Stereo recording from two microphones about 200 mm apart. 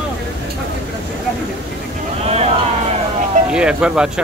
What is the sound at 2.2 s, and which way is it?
Speech, 30° right (ahead or behind).